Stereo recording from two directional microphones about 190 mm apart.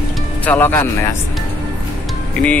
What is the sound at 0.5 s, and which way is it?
Speech, 10° left (ahead or behind).